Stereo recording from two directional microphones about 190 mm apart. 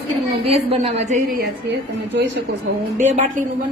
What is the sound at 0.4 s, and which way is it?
A woman's voice, 30° right (ahead or behind).